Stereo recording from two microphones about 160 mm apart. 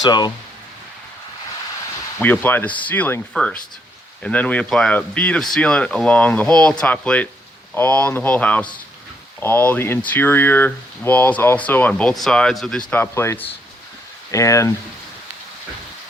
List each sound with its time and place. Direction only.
0.0 s speech: 25° left (ahead or behind)
2.2 s speech: 10° left (ahead or behind)
12.9 s speech: 15° left (ahead or behind)